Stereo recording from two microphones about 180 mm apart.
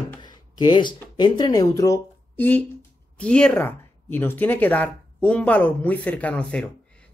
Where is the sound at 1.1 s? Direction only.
25° left (ahead or behind).